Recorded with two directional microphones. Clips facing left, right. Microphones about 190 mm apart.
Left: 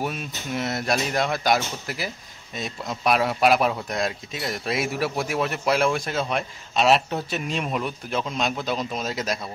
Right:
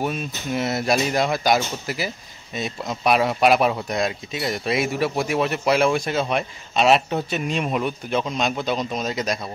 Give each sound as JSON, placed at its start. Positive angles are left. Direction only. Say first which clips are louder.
{"t": 0.0, "sound": "speech", "louder": "right 3 dB", "side_deg": 0}